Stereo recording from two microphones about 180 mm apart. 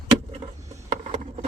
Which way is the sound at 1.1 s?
35° right (ahead or behind).